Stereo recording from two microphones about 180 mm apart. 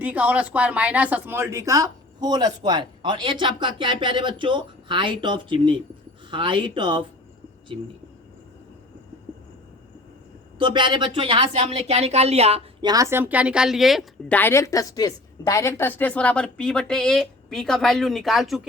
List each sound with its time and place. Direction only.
0.0 s speech: 10° right (ahead or behind); by 7.0 s 25° right (ahead or behind)
10.6 s speech: 25° right (ahead or behind)
12.9 s a woman's voice: 15° right (ahead or behind)
14.3 s a woman's voice: 15° left (ahead or behind)